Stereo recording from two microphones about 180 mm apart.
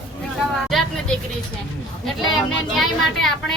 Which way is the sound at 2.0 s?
Centre (ahead or behind).